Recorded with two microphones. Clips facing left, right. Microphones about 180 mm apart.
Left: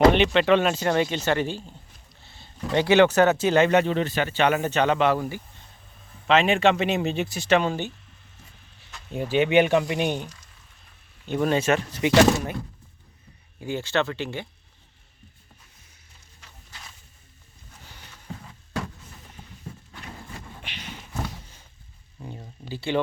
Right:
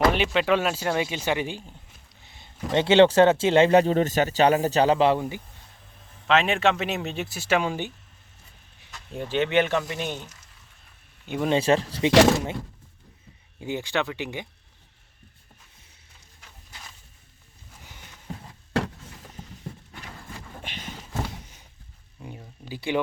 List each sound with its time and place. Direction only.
0.1 s speech: 5° right (ahead or behind)
2.2 s a sound: 15° right (ahead or behind)
2.7 s speech: 25° right (ahead or behind)
6.2 s speech: centre (ahead or behind)
8.9 s speech: 5° left (ahead or behind)
11.4 s speech: 30° right (ahead or behind)
13.6 s speech: 20° right (ahead or behind)
17.8 s a sound: 20° right (ahead or behind)
20.6 s a sound: 45° right (ahead or behind)
22.7 s speech: 15° right (ahead or behind)